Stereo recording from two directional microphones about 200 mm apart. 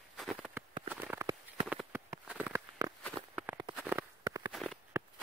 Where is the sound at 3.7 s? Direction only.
10° right (ahead or behind).